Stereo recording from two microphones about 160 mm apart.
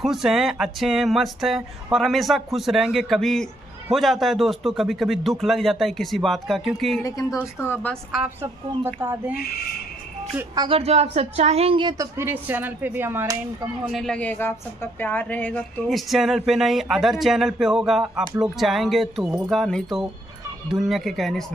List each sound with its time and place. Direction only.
0.0 s speech: centre (ahead or behind)
7.0 s a woman's voice: 20° left (ahead or behind)
8.4 s speech: 15° right (ahead or behind)
10.3 s speech: 25° right (ahead or behind)
10.7 s speech: 40° right (ahead or behind)
12.0 s speech: 15° right (ahead or behind)
13.9 s a woman's voice: 5° left (ahead or behind)
16.1 s speech: centre (ahead or behind)